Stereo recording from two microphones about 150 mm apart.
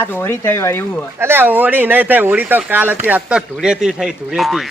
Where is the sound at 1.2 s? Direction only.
15° right (ahead or behind).